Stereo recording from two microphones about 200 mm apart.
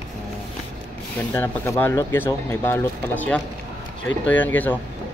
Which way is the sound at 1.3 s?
10° left (ahead or behind).